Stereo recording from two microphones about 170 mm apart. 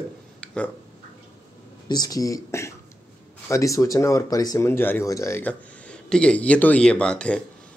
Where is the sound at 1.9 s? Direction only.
20° left (ahead or behind).